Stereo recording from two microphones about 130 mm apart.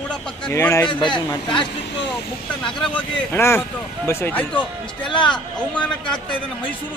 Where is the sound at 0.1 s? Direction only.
5° left (ahead or behind).